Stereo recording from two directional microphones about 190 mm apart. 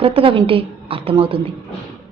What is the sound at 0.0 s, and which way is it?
A woman's voice, 30° right (ahead or behind).